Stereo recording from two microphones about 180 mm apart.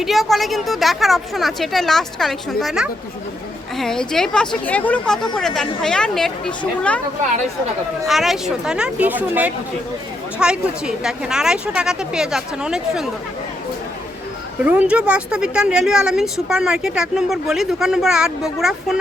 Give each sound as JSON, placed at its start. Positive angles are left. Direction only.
{"t": 0.0, "sound": "a woman's voice", "side_deg": 0}
{"t": 8.0, "sound": "a woman's voice", "side_deg": 0}
{"t": 14.6, "sound": "a woman's voice", "side_deg": -5}